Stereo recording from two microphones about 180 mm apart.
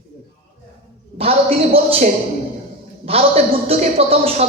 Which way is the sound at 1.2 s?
30° right (ahead or behind).